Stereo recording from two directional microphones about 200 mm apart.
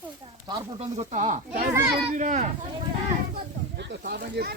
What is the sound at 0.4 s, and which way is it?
Speech, 30° right (ahead or behind).